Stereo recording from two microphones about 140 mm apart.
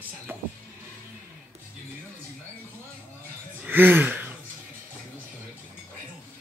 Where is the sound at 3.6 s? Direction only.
15° right (ahead or behind).